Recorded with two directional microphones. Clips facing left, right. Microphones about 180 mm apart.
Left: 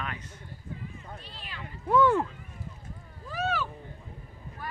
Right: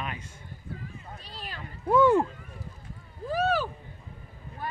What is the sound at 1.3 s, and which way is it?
Cat, 40° right (ahead or behind).